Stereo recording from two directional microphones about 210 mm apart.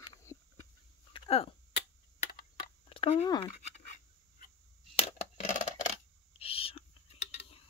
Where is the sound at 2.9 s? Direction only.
25° left (ahead or behind).